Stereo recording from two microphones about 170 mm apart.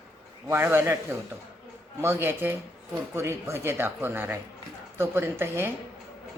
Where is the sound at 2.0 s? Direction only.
15° right (ahead or behind).